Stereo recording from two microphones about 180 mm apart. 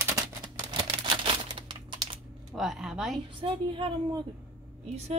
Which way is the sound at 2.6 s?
Centre (ahead or behind).